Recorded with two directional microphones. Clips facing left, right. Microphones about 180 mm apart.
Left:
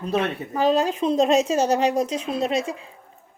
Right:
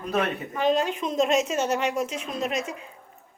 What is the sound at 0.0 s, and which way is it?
A woman's voice, 30° left (ahead or behind).